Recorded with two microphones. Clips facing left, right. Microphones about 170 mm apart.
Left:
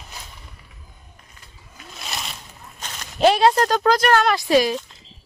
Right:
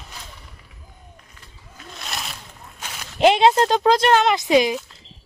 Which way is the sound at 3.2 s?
20° right (ahead or behind).